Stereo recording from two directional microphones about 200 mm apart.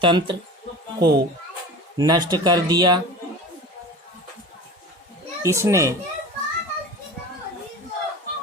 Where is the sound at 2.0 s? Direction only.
20° right (ahead or behind).